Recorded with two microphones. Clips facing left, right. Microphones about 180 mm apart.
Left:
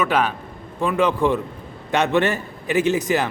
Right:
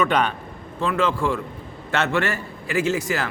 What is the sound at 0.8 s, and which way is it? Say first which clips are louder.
A man's voice: left 3 dB; 15° left (ahead or behind).